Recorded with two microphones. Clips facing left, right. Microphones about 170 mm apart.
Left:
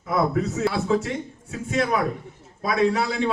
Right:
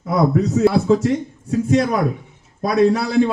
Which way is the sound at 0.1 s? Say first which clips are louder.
Right 6 dB; 40° right (ahead or behind).